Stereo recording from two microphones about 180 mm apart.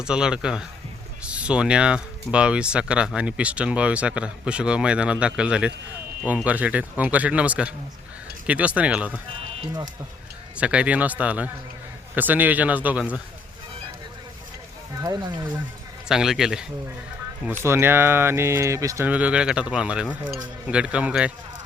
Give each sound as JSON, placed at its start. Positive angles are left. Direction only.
{"t": 0.0, "sound": "speech", "side_deg": -5}
{"t": 10.6, "sound": "speech", "side_deg": -5}
{"t": 16.0, "sound": "speech", "side_deg": 0}